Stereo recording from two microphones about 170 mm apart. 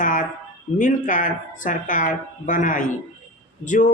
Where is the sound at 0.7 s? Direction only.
50° left (ahead or behind).